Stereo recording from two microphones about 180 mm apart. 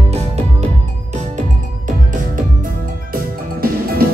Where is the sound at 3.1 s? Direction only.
55° right (ahead or behind).